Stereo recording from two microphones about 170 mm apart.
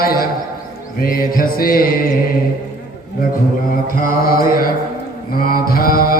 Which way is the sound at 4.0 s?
55° left (ahead or behind).